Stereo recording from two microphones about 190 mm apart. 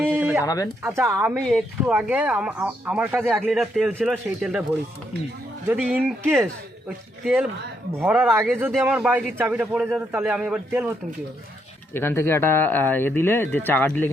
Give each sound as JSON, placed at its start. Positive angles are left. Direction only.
{"t": 0.0, "sound": "a sound", "side_deg": -10}
{"t": 0.4, "sound": "speech", "side_deg": 20}
{"t": 0.8, "sound": "a man's voice", "side_deg": -15}
{"t": 1.4, "sound": "a man's voice", "side_deg": 0}
{"t": 5.6, "sound": "a man's voice", "side_deg": -5}
{"t": 7.9, "sound": "a man's voice", "side_deg": -10}
{"t": 11.9, "sound": "speech", "side_deg": 10}